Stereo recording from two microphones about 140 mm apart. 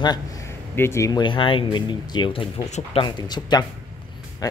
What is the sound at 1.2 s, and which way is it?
Speech, 35° left (ahead or behind).